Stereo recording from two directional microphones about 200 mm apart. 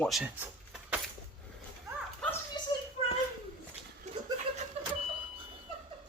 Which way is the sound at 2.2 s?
5° left (ahead or behind).